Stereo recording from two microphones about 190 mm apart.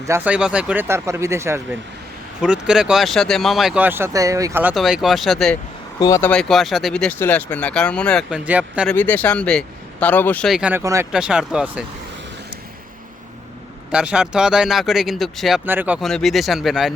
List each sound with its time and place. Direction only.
0.0 s speech: 10° right (ahead or behind)
2.4 s speech: 5° right (ahead or behind)
4.7 s speech: centre (ahead or behind)
6.0 s speech: 15° left (ahead or behind)
6.3 s speech: centre (ahead or behind)
8.4 s speech: 5° right (ahead or behind)
8.9 s speech: 10° left (ahead or behind); by 11.0 s 15° right (ahead or behind)
11.1 s speech: 5° right (ahead or behind)
13.9 s speech: 5° right (ahead or behind)